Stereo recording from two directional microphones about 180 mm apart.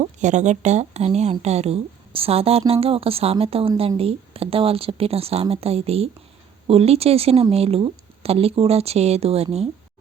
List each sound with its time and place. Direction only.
0.0 s a woman's voice: 40° right (ahead or behind)